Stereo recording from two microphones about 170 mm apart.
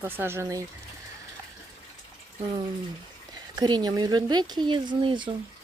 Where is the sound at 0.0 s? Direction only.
15° right (ahead or behind).